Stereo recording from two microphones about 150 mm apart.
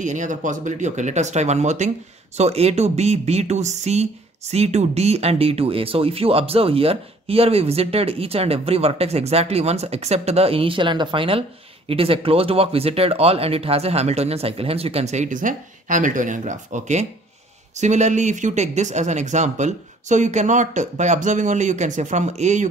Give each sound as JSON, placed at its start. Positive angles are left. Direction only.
{"t": 0.0, "sound": "speech", "side_deg": -55}